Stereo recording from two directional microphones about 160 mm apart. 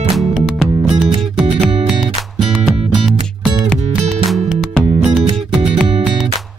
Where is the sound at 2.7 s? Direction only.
Centre (ahead or behind).